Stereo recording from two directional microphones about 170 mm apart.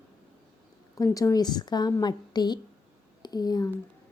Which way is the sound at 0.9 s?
20° left (ahead or behind).